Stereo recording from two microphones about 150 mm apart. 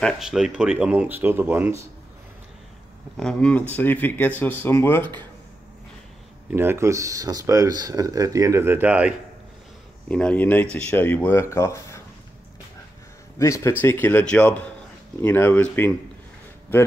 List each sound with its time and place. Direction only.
0.0 s speech: 5° right (ahead or behind)
3.2 s speech: 5° left (ahead or behind)
6.5 s speech: 15° right (ahead or behind)
10.0 s speech: 5° left (ahead or behind)
13.4 s speech: 20° left (ahead or behind)